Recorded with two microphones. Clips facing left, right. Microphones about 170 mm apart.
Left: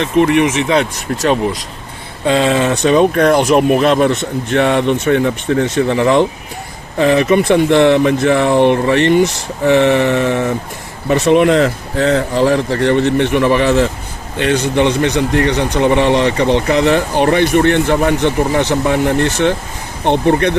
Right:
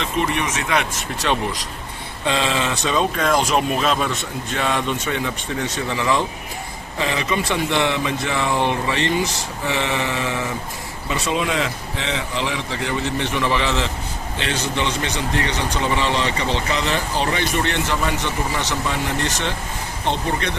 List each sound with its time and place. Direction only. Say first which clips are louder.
0.0 s speech: left 11 dB; 60° left (ahead or behind)
1.1 s speech: left 8 dB; 40° left (ahead or behind); by 10.5 s 60° left (ahead or behind)
11.1 s speech: left 12 dB; 70° left (ahead or behind)